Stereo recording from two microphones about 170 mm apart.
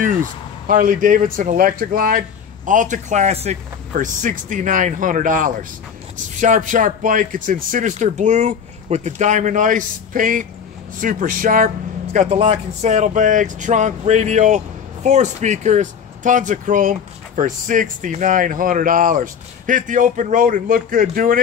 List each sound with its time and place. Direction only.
0.0 s speech: 55° right (ahead or behind)